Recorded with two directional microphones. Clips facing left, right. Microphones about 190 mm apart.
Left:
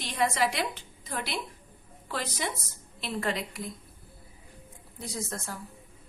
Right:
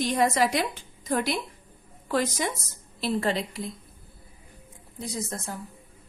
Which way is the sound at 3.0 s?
30° right (ahead or behind).